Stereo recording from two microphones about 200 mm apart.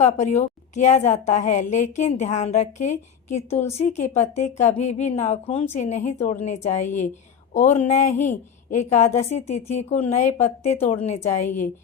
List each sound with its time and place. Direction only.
0.0 s a woman's voice: 35° left (ahead or behind)